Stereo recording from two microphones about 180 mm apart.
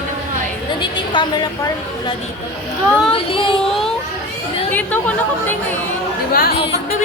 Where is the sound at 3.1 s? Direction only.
30° left (ahead or behind).